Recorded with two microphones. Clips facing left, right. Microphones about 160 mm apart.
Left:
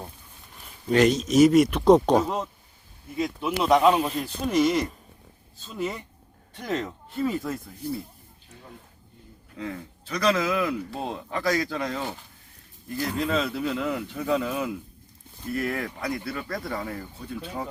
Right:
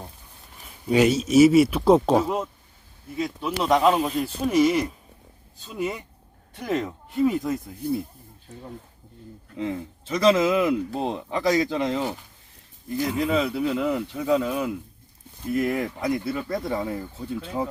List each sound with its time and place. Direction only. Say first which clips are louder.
0.9 s speech: right 1 dB; 5° right (ahead or behind)
9.6 s speech: right 5 dB; 25° right (ahead or behind)
13.1 s speech: right 2 dB; 5° right (ahead or behind)
15.4 s speech: right 4 dB; 20° right (ahead or behind)